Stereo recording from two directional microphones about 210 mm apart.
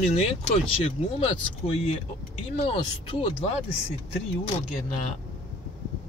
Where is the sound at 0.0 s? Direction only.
30° left (ahead or behind).